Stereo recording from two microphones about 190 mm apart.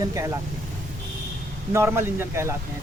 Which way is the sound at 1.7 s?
15° right (ahead or behind).